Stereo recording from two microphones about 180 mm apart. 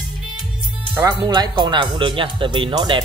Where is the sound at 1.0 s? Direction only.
20° right (ahead or behind).